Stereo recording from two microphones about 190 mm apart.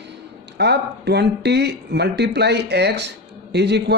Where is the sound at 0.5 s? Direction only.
60° right (ahead or behind).